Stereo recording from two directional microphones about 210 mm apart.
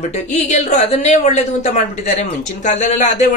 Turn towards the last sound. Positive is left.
turn(degrees=35)  # may be behind; listen again after turning